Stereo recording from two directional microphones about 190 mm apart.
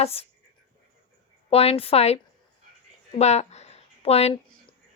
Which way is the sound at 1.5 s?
30° left (ahead or behind).